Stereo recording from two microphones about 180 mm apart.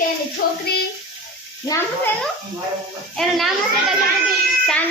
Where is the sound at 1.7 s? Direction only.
20° left (ahead or behind).